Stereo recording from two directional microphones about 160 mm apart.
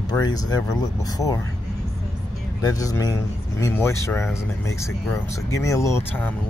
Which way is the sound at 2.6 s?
20° left (ahead or behind).